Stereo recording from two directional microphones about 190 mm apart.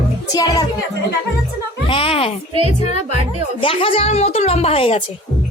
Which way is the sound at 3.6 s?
30° left (ahead or behind).